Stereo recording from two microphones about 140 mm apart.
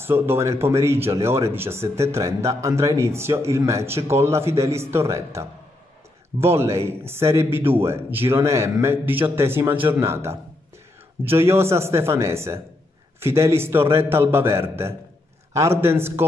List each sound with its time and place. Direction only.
0.0 s a man's voice: 15° right (ahead or behind)